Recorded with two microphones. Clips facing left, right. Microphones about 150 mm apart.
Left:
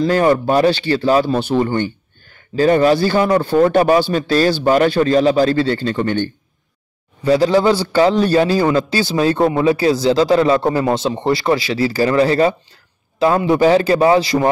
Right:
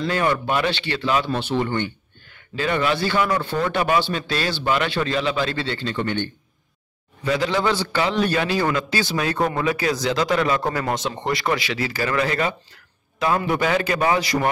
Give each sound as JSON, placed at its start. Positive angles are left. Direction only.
{"t": 0.0, "sound": "speech", "side_deg": 40}